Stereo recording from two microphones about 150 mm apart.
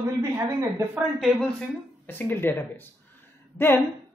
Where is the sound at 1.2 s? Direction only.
Centre (ahead or behind).